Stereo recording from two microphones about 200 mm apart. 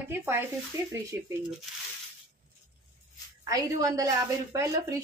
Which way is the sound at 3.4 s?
15° right (ahead or behind).